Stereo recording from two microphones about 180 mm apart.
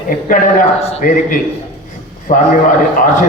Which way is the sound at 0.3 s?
45° left (ahead or behind).